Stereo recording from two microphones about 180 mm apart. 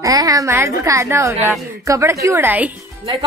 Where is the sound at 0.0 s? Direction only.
20° right (ahead or behind).